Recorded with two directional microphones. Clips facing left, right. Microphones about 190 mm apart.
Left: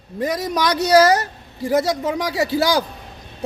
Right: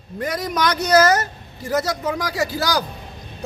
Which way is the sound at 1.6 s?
25° left (ahead or behind).